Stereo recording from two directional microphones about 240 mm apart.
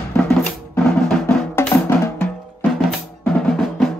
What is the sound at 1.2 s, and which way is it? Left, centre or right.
Drum, centre.